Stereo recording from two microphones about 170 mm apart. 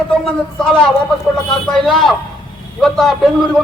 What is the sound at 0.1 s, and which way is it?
A man's voice, 5° left (ahead or behind).